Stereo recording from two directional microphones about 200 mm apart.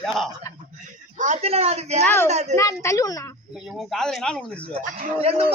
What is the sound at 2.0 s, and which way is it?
Speech, 10° left (ahead or behind).